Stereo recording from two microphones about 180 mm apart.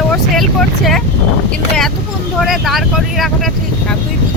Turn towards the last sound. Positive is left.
turn(degrees=0)  # may be behind; listen again after turning